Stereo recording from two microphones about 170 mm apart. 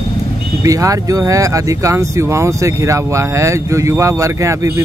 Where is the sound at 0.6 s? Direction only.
20° right (ahead or behind).